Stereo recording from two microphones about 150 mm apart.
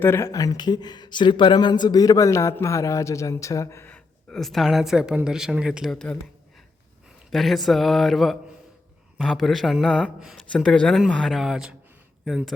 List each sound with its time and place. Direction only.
0.0 s speech: 15° left (ahead or behind)
7.3 s speech: centre (ahead or behind)